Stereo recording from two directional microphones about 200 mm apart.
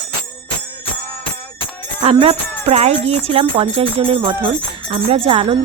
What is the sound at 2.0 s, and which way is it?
Music, 25° right (ahead or behind).